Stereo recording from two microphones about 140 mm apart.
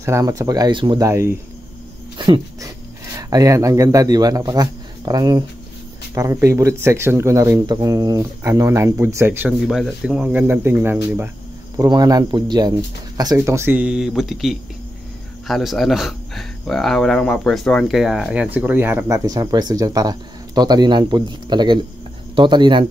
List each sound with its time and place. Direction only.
0.0 s speech: 20° right (ahead or behind)
2.1 s speech: 35° right (ahead or behind); by 9.5 s 15° right (ahead or behind)
9.7 s speech: centre (ahead or behind); by 13.7 s 20° right (ahead or behind)
13.7 s speech: 5° right (ahead or behind)
19.0 s speech: 25° right (ahead or behind)